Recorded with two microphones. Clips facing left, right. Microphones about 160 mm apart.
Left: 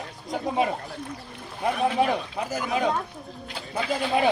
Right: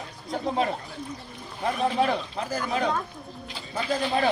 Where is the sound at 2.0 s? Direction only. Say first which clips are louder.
Left 1 dB; 10° left (ahead or behind).